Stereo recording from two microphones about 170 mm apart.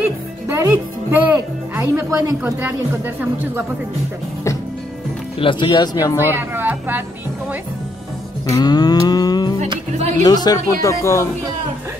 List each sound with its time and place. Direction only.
0.5 s music: 15° right (ahead or behind)
1.8 s a woman's voice: 15° right (ahead or behind)
5.4 s cattle: 30° left (ahead or behind)
6.3 s a woman's voice: 10° right (ahead or behind)
8.5 s cattle: 25° left (ahead or behind)
9.7 s music: 40° right (ahead or behind)
10.2 s speech: 25° left (ahead or behind)